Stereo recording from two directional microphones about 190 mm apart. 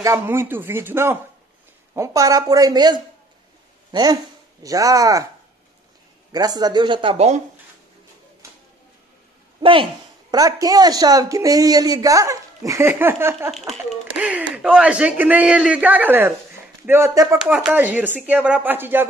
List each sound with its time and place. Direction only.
0.0 s speech: 15° right (ahead or behind)
6.3 s speech: 20° right (ahead or behind); by 7.4 s 35° right (ahead or behind)
9.6 s a sound: 25° right (ahead or behind)
10.3 s speech: 20° right (ahead or behind)
13.5 s speech: centre (ahead or behind); by 17.4 s 15° right (ahead or behind)
17.4 s speech: 5° right (ahead or behind)